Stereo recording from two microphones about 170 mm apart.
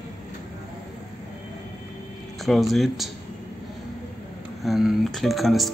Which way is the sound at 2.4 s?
Centre (ahead or behind).